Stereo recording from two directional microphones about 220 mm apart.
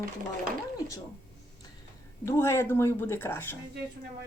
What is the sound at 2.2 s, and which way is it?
Speech, 10° left (ahead or behind).